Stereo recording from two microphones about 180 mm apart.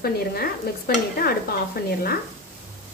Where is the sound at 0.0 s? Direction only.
55° left (ahead or behind).